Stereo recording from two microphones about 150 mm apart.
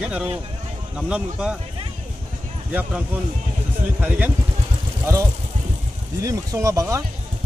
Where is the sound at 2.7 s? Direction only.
10° right (ahead or behind).